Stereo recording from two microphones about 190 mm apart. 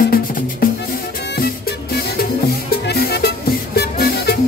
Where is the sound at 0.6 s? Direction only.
50° left (ahead or behind).